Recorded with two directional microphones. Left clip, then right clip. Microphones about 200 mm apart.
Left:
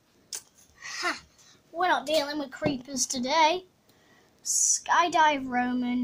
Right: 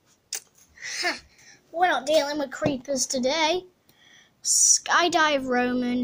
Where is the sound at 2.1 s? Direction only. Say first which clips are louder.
Right 5 dB; 10° right (ahead or behind).